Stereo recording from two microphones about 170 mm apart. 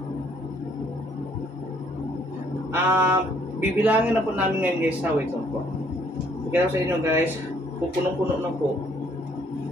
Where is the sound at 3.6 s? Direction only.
10° right (ahead or behind).